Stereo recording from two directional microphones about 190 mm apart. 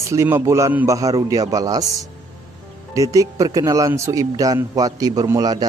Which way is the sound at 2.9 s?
15° right (ahead or behind).